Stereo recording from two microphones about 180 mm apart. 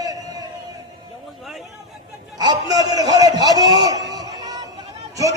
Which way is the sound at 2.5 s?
20° right (ahead or behind).